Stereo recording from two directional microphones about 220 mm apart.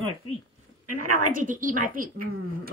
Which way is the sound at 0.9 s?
40° right (ahead or behind).